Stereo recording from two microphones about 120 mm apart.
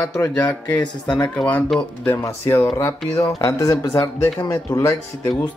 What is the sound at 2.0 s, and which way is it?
Speech, 20° left (ahead or behind).